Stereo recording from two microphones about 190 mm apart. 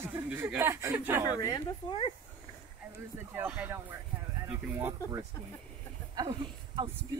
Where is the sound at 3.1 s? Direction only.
10° right (ahead or behind).